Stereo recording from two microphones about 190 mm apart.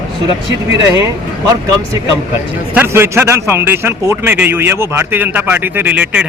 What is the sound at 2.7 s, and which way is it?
A man's voice, 10° right (ahead or behind).